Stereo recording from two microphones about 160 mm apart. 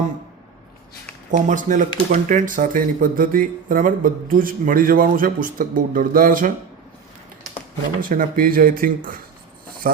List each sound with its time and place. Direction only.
1.3 s speech: 50° right (ahead or behind)
8.1 s speech: 60° right (ahead or behind)